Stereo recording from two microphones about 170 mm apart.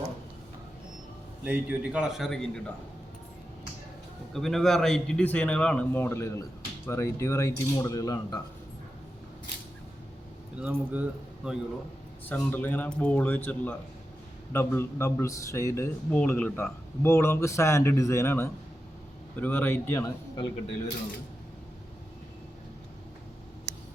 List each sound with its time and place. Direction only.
1.5 s a man's voice: 10° right (ahead or behind)
4.4 s a man's voice: centre (ahead or behind); by 8.4 s 20° left (ahead or behind)
10.6 s speech: 10° right (ahead or behind)
12.2 s a man's voice: 10° left (ahead or behind)
20.3 s speech: 30° left (ahead or behind)